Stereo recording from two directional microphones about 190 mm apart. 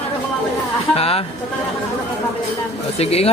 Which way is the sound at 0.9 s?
30° left (ahead or behind).